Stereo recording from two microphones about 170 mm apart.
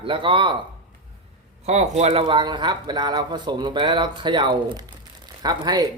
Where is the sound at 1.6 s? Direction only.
40° right (ahead or behind).